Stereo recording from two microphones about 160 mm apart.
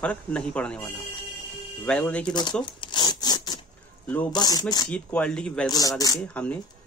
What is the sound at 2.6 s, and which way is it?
Zipper, 30° left (ahead or behind).